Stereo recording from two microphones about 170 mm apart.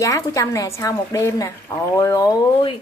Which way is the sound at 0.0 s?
20° left (ahead or behind).